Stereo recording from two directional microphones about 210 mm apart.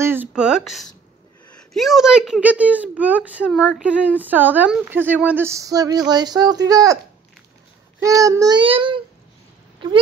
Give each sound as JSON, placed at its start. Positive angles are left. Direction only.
{"t": 0.0, "sound": "speech", "side_deg": -10}
{"t": 8.0, "sound": "speech", "side_deg": -15}